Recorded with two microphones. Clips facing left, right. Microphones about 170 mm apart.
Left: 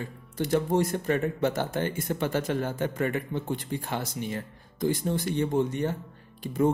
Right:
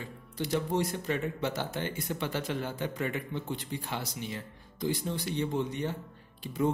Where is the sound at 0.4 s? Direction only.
50° left (ahead or behind).